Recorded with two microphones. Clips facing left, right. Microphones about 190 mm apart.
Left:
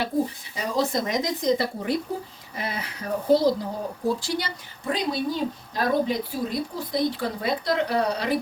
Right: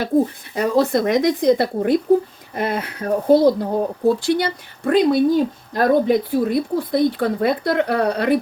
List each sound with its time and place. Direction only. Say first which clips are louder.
0.5 s speech: right 8 dB; 60° right (ahead or behind)